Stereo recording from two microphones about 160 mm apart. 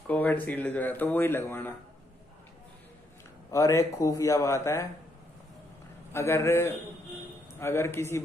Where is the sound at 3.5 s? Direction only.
20° left (ahead or behind).